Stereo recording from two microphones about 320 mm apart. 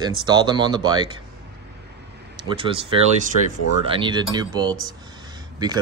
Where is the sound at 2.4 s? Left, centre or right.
Centre.